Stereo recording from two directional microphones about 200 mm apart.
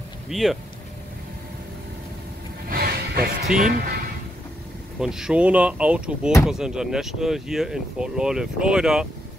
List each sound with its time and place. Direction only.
0.3 s speech: centre (ahead or behind)
2.7 s music: 45° right (ahead or behind)
4.9 s speech: 5° right (ahead or behind)